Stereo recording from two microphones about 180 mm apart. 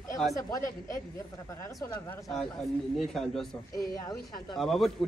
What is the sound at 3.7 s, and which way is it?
Speech, 20° left (ahead or behind).